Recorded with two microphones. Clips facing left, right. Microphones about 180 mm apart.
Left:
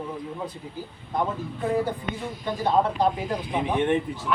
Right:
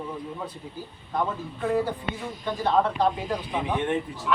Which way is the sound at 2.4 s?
15° left (ahead or behind).